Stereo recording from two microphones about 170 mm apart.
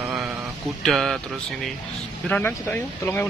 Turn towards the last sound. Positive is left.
turn(degrees=15)  # may be behind; listen again after turning